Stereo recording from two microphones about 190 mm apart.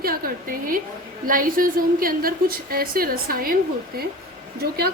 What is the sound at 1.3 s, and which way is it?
A woman's voice, 45° right (ahead or behind).